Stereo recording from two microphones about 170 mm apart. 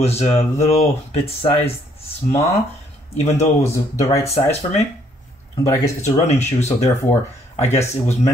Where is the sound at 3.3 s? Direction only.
15° left (ahead or behind).